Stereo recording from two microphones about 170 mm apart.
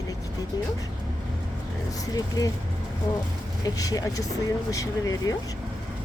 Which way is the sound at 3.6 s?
20° left (ahead or behind).